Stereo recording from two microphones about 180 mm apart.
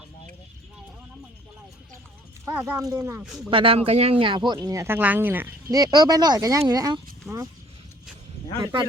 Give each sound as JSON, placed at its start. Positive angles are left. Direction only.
{"t": 2.4, "sound": "speech", "side_deg": -15}
{"t": 3.2, "sound": "speech", "side_deg": 0}
{"t": 3.5, "sound": "speech", "side_deg": -30}
{"t": 8.6, "sound": "speech", "side_deg": -25}